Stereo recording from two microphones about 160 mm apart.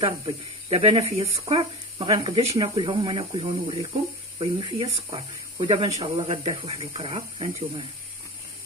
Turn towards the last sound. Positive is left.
turn(degrees=-35)  # may be behind; listen again after turning